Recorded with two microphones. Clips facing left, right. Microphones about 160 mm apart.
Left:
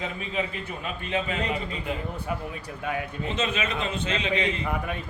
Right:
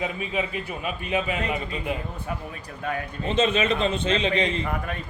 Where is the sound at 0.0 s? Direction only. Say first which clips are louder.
Right 3 dB; 15° right (ahead or behind).